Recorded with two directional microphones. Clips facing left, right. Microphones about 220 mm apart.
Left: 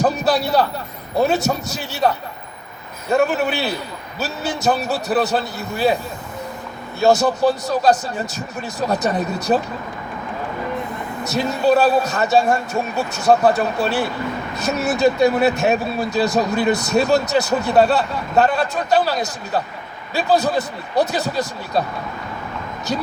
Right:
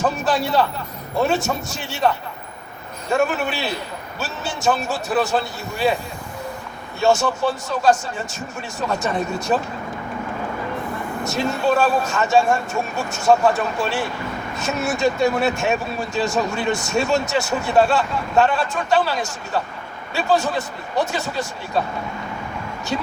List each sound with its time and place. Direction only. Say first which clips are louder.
0.0 s a sound: left 3 dB; 35° left (ahead or behind)
1.2 s speech: left 2 dB; 35° left (ahead or behind)
3.2 s speech: left 3 dB; 35° left (ahead or behind)
7.0 s speech: left 3 dB; 35° left (ahead or behind)
11.3 s speech: left 3 dB; 35° left (ahead or behind)